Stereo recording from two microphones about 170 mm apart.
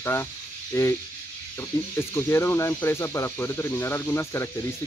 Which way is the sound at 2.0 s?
15° left (ahead or behind).